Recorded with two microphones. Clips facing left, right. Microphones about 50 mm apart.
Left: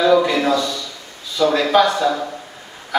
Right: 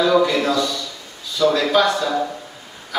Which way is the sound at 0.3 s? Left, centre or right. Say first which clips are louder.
Left 1 dB; centre.